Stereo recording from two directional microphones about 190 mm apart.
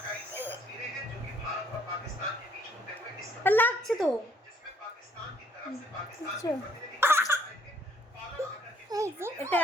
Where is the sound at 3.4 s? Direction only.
10° left (ahead or behind).